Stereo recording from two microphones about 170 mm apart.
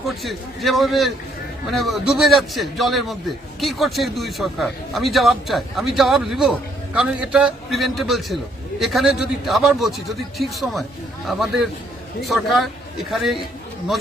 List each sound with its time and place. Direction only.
0.2 s a man's voice: centre (ahead or behind)